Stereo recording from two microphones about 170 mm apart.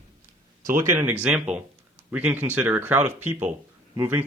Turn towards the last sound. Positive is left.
turn(degrees=-10)  # may be behind; listen again after turning